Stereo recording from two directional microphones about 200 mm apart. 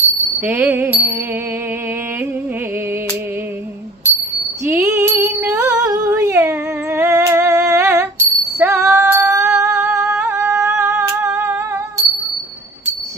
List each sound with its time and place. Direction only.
0.5 s music: 10° right (ahead or behind)
4.6 s female singing: 10° right (ahead or behind)